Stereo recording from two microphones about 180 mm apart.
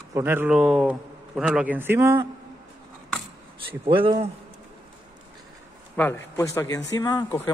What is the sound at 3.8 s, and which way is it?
Speech, 30° right (ahead or behind).